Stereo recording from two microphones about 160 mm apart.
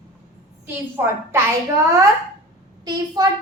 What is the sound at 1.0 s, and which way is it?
Speech, 15° right (ahead or behind).